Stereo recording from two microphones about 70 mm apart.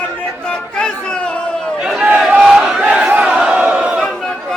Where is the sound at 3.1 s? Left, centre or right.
Centre.